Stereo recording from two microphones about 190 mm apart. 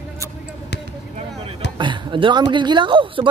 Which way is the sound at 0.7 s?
60° left (ahead or behind).